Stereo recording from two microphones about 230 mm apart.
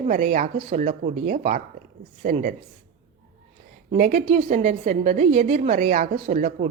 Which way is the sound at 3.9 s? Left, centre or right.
Right.